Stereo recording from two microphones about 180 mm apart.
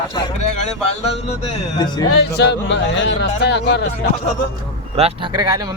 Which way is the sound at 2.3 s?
70° left (ahead or behind).